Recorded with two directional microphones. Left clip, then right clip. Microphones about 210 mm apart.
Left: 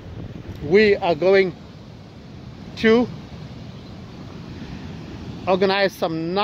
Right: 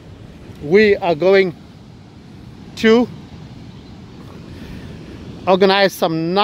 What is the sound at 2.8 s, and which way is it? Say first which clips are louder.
Speech: right 4 dB; 50° right (ahead or behind).